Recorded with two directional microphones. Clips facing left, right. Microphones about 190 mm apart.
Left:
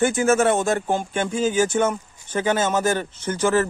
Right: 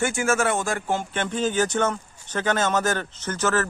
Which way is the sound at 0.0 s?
20° left (ahead or behind).